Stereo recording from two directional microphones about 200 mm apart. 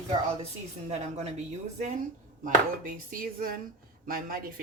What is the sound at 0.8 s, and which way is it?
Speech, 35° right (ahead or behind).